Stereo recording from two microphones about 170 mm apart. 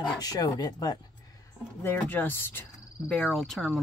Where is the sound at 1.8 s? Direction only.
10° left (ahead or behind).